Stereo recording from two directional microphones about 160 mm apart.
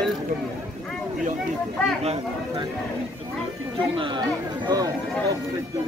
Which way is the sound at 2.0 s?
40° right (ahead or behind).